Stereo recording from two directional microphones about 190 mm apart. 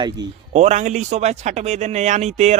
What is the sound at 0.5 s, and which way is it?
Speech, 35° right (ahead or behind).